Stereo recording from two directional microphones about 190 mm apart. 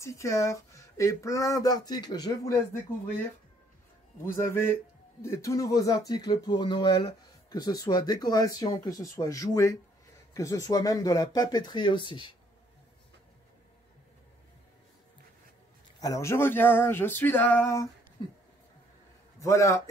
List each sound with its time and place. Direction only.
0.0 s speech: 15° left (ahead or behind)
4.2 s speech: 15° left (ahead or behind)
16.0 s speech: 15° left (ahead or behind)
19.4 s speech: 15° left (ahead or behind)